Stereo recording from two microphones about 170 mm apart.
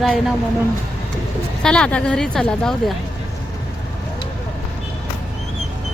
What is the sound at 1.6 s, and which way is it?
Speech, 5° left (ahead or behind).